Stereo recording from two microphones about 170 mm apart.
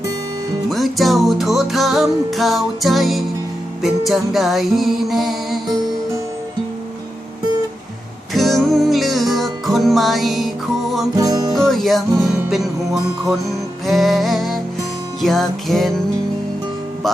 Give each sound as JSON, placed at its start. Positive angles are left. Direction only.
{"t": 0.7, "sound": "music", "side_deg": 0}
{"t": 8.3, "sound": "music", "side_deg": 0}
{"t": 11.2, "sound": "music", "side_deg": -25}
{"t": 11.5, "sound": "music", "side_deg": 0}